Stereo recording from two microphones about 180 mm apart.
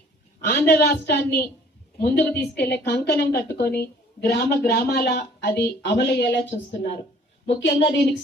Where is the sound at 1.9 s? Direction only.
65° left (ahead or behind).